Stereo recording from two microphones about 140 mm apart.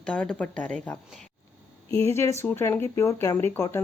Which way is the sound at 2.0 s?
20° left (ahead or behind).